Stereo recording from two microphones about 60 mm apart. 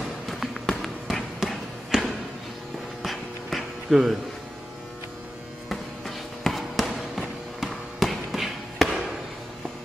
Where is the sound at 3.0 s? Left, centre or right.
Centre.